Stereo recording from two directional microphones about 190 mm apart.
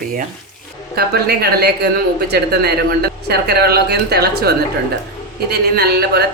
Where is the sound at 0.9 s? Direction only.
55° right (ahead or behind).